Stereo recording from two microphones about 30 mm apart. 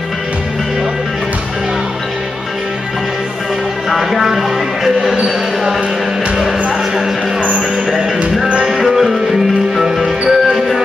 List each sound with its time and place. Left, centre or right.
3.9 s music: centre
5.2 s basketball bounce: centre
8.8 s music: centre
10.0 s music: right